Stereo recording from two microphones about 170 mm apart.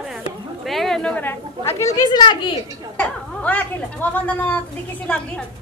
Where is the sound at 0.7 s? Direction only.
Centre (ahead or behind); by 2.5 s 25° left (ahead or behind).